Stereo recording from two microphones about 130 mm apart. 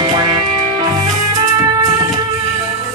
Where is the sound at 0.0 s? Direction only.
35° right (ahead or behind).